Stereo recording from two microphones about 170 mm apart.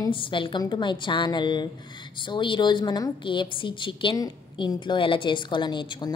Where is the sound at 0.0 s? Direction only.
30° left (ahead or behind).